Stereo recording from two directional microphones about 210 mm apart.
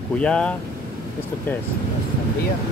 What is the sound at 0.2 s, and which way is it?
Speech, 5° left (ahead or behind).